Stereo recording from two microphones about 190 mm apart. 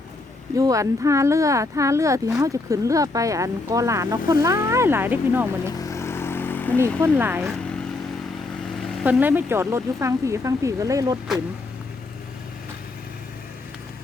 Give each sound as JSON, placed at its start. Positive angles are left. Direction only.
{"t": 0.5, "sound": "speech", "side_deg": -20}
{"t": 5.7, "sound": "vehicle", "side_deg": 15}
{"t": 6.7, "sound": "speech", "side_deg": -15}
{"t": 9.0, "sound": "speech", "side_deg": -10}